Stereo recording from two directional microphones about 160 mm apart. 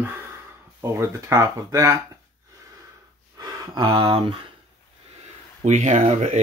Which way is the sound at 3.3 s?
25° right (ahead or behind).